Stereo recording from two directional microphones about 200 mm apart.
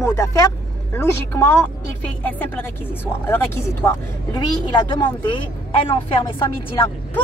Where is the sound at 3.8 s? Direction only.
20° left (ahead or behind).